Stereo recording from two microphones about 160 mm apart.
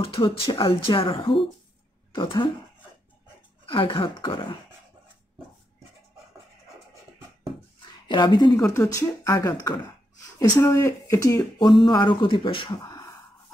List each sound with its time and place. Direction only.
0.0 s speech: 35° left (ahead or behind)
3.6 s speech: 35° left (ahead or behind)
8.1 s speech: 30° left (ahead or behind)